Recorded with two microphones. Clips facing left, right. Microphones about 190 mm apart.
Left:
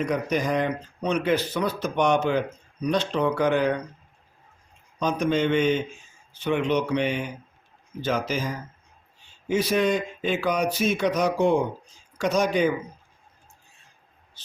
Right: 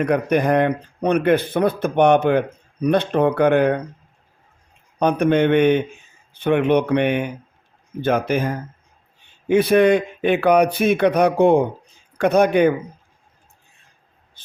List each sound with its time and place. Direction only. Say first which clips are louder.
0.0 s speech: right 7 dB; 60° right (ahead or behind)
4.9 s speech: right 7 dB; 60° right (ahead or behind)
14.4 s rub: left 1 dB; 50° right (ahead or behind)